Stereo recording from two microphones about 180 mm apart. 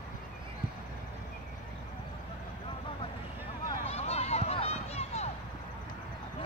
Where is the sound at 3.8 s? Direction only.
35° left (ahead or behind).